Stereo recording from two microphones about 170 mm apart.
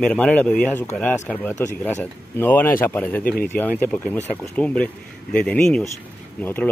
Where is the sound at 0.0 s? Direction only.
5° left (ahead or behind).